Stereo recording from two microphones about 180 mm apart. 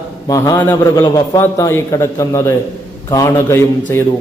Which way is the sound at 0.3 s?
15° left (ahead or behind).